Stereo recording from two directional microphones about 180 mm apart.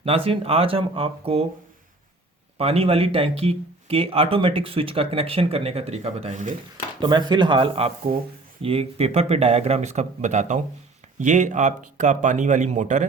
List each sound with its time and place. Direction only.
0.0 s speech: 30° right (ahead or behind)
2.6 s speech: 35° right (ahead or behind)
7.0 s speech: 25° right (ahead or behind); by 13.1 s 45° right (ahead or behind)